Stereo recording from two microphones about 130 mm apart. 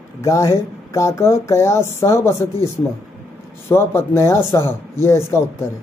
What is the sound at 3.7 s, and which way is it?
Speech, 20° left (ahead or behind).